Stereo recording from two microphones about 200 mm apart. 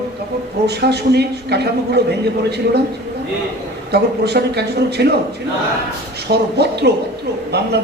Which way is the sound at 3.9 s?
55° right (ahead or behind).